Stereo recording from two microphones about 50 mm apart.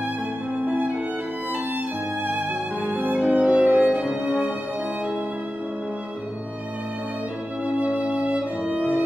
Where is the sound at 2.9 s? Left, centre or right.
Right.